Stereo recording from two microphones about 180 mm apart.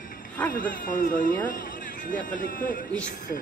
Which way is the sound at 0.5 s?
50° left (ahead or behind).